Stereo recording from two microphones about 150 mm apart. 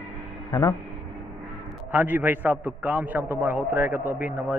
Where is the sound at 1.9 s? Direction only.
10° right (ahead or behind).